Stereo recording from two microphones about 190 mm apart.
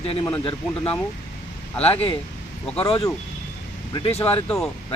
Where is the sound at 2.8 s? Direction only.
30° left (ahead or behind).